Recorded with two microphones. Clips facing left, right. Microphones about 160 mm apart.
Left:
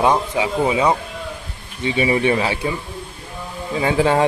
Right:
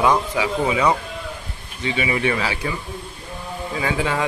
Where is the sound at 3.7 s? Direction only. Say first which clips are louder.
Left 6 dB; 30° left (ahead or behind).